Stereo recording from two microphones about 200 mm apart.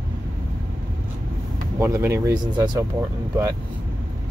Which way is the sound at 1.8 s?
15° right (ahead or behind).